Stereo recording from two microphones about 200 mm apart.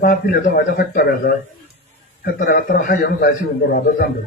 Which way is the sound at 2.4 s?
40° left (ahead or behind).